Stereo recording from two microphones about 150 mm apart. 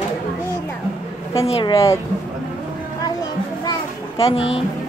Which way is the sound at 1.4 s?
40° left (ahead or behind).